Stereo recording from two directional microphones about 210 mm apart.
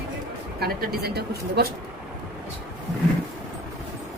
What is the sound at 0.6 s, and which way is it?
A woman's voice, 45° right (ahead or behind).